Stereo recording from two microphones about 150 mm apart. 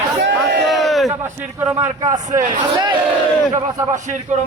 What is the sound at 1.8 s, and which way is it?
Speech, 20° right (ahead or behind).